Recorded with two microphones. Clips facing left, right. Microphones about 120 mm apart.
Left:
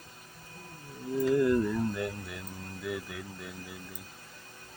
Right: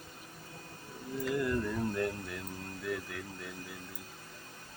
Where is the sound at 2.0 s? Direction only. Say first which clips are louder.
Right 1 dB; 5° left (ahead or behind).